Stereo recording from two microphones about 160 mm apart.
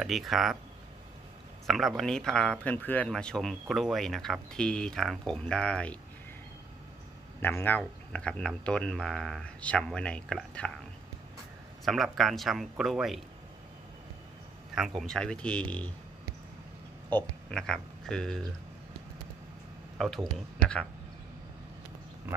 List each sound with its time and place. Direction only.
0.0 s speech: centre (ahead or behind)
1.7 s speech: centre (ahead or behind)
7.4 s speech: 10° left (ahead or behind)
11.8 s speech: centre (ahead or behind)
14.8 s speech: 5° left (ahead or behind)
17.1 s speech: 5° left (ahead or behind)
20.0 s speech: centre (ahead or behind)